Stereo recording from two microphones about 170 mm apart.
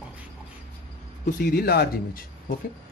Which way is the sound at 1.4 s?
60° left (ahead or behind).